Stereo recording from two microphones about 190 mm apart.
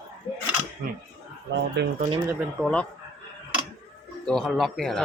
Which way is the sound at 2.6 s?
5° left (ahead or behind).